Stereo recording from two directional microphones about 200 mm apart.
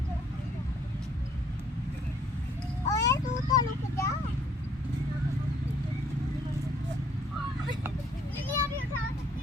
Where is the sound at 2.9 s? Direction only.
15° left (ahead or behind).